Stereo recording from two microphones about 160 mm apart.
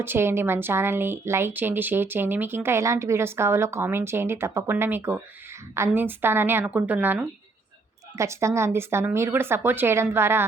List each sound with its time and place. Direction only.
0.0 s speech: 15° right (ahead or behind)